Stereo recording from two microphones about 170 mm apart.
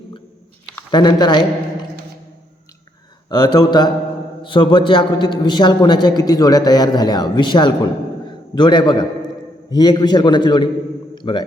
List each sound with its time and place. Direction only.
0.9 s a man's voice: 25° left (ahead or behind)
3.2 s a man's voice: 25° left (ahead or behind)